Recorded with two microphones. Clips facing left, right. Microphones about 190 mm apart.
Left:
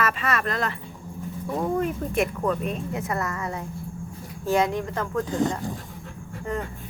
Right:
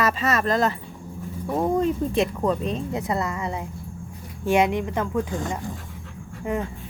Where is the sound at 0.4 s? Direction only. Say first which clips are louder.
Right 6 dB; 35° right (ahead or behind).